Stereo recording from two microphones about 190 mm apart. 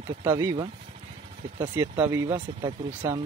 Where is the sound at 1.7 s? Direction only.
10° right (ahead or behind).